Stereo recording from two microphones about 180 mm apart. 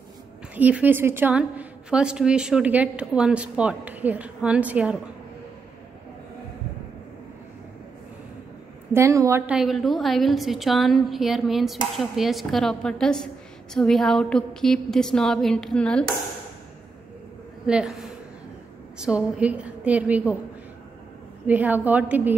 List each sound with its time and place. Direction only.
0.6 s a woman's voice: 10° right (ahead or behind)
8.9 s a woman's voice: 15° right (ahead or behind)
9.5 s a woman's voice: centre (ahead or behind)
17.6 s a woman's voice: 5° right (ahead or behind)
18.9 s a woman's voice: 5° right (ahead or behind)
21.5 s a woman's voice: 10° right (ahead or behind)